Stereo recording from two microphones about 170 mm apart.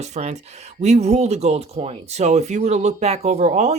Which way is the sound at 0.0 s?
40° right (ahead or behind).